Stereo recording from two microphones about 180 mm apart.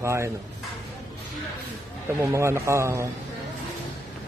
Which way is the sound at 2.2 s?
15° right (ahead or behind).